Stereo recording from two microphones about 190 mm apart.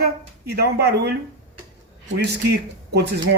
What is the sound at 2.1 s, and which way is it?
Speech, 60° right (ahead or behind).